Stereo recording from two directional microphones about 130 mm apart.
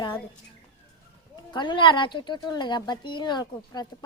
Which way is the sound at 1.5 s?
35° left (ahead or behind).